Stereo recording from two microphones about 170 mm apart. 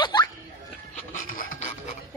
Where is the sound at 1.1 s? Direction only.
50° left (ahead or behind).